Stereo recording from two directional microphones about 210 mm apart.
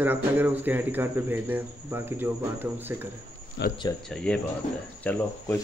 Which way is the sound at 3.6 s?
60° left (ahead or behind).